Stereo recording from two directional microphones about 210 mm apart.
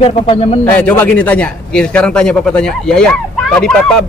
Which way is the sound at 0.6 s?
10° left (ahead or behind).